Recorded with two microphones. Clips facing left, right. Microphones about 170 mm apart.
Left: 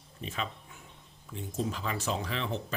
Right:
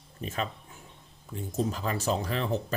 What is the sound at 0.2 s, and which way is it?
Speech, 45° right (ahead or behind).